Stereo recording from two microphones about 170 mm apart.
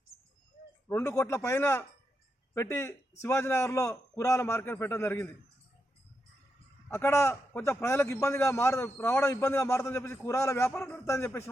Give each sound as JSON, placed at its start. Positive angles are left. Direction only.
{"t": 0.9, "sound": "a man's voice", "side_deg": 15}
{"t": 6.9, "sound": "a man's voice", "side_deg": 15}